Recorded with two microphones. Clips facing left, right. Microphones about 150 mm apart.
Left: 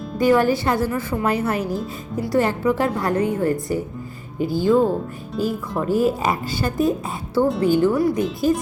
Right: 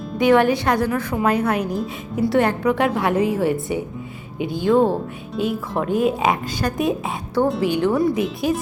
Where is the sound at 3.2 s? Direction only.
90° right.